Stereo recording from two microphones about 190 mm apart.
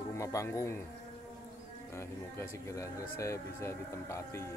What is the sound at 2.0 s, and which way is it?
Speech, 15° left (ahead or behind).